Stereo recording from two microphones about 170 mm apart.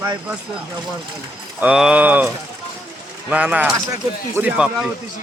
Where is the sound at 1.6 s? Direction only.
5° right (ahead or behind).